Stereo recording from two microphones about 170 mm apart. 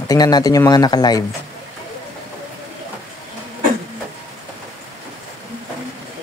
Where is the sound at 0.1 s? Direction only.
20° left (ahead or behind).